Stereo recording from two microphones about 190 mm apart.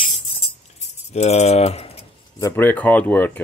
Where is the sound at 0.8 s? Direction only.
35° left (ahead or behind).